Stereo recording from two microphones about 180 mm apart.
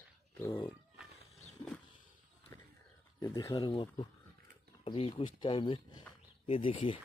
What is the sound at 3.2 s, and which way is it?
Speech, 20° left (ahead or behind).